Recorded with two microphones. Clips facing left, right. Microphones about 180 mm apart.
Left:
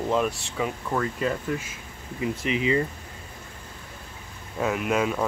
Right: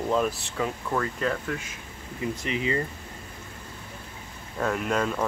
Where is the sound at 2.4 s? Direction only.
35° right (ahead or behind).